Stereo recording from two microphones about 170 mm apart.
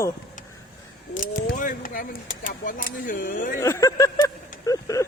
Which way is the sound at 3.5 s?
15° left (ahead or behind).